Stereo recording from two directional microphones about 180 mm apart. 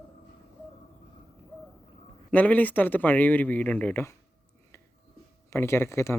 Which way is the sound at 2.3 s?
10° left (ahead or behind).